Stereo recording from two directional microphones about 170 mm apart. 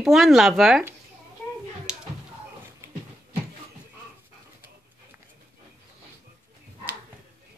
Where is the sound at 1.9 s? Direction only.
5° right (ahead or behind).